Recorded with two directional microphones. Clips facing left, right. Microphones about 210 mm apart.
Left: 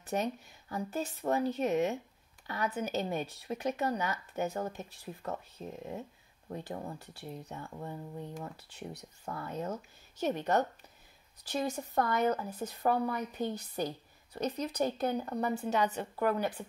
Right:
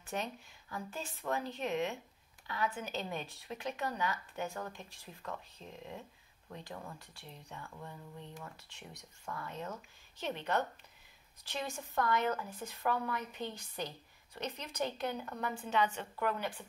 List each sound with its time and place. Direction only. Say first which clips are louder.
0.1 s speech: left 7 dB; 45° left (ahead or behind)